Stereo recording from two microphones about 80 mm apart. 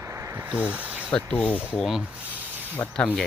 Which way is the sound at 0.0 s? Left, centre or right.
Right.